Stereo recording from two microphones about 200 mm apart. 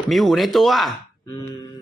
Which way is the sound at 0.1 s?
Centre (ahead or behind).